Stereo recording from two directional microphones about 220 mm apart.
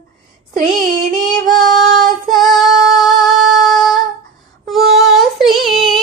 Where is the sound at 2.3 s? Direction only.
Centre (ahead or behind).